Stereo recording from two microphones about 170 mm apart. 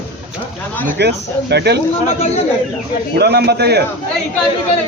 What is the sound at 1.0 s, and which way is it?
Speech, 80° right.